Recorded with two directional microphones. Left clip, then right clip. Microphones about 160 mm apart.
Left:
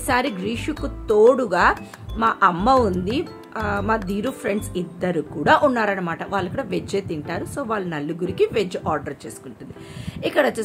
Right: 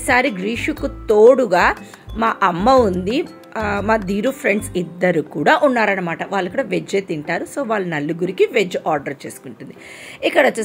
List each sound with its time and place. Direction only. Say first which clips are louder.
0.0 s speech: right 5 dB; 5° right (ahead or behind)